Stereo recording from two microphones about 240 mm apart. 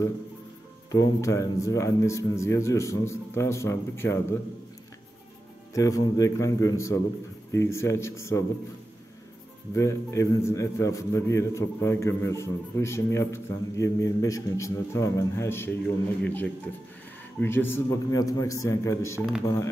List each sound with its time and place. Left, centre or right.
0.9 s a man's voice: centre
5.8 s a man's voice: centre
9.8 s a man's voice: centre